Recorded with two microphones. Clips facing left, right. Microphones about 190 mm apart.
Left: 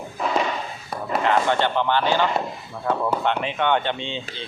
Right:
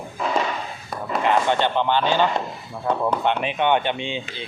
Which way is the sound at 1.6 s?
15° right (ahead or behind).